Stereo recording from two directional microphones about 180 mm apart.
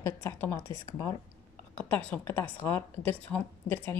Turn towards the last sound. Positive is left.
turn(degrees=10)  # may be behind; listen again after turning